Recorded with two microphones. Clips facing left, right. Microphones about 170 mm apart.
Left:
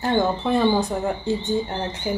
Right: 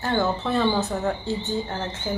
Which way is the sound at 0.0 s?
15° left (ahead or behind).